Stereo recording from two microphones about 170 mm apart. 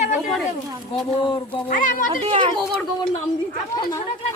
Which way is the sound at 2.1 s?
35° right (ahead or behind).